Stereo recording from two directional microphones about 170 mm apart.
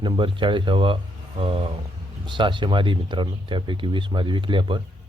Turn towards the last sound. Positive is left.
turn(degrees=-30)  # may be behind; listen again after turning